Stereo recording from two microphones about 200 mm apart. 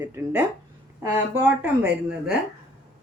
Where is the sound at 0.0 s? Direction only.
10° right (ahead or behind).